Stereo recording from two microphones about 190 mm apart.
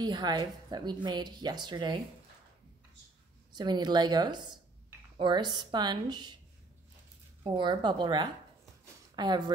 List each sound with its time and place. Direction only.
0.0 s a woman's voice: 20° right (ahead or behind)
3.5 s a woman's voice: 20° right (ahead or behind)
7.4 s a woman's voice: 25° right (ahead or behind)